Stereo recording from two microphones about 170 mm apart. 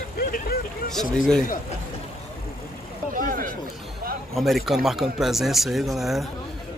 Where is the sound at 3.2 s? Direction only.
55° right (ahead or behind).